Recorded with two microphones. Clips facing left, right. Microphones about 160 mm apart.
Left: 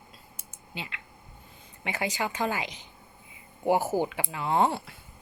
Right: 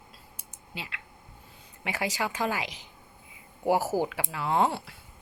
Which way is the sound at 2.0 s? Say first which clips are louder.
Even; 5° right (ahead or behind).